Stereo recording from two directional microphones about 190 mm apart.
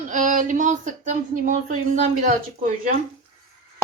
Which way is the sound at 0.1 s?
45° right (ahead or behind).